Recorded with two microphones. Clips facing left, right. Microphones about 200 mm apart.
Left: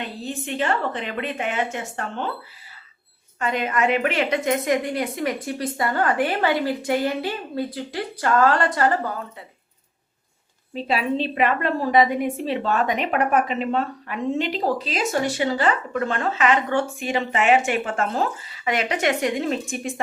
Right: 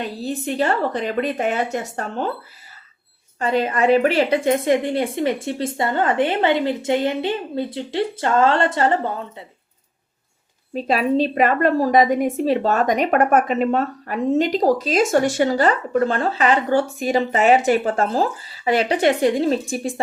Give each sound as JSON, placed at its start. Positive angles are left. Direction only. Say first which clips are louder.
{"t": 0.0, "sound": "a woman's voice", "louder": "right 5 dB", "side_deg": -40}
{"t": 3.4, "sound": "a woman's voice", "louder": "right 4 dB", "side_deg": -30}
{"t": 10.8, "sound": "a woman's voice", "louder": "right 5 dB", "side_deg": -40}